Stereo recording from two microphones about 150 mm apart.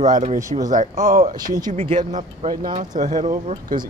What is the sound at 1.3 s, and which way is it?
Speech, 25° right (ahead or behind).